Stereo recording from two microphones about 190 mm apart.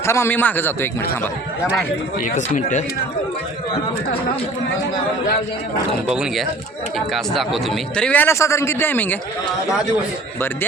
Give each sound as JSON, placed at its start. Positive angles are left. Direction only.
{"t": 0.0, "sound": "a man's voice", "side_deg": 15}
{"t": 2.3, "sound": "speech", "side_deg": 40}
{"t": 6.1, "sound": "a man's voice", "side_deg": -5}